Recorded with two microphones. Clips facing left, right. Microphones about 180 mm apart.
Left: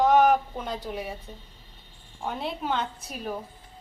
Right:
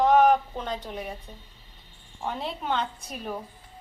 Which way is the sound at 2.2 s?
5° left (ahead or behind).